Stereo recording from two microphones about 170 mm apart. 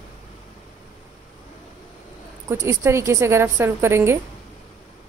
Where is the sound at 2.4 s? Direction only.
15° right (ahead or behind).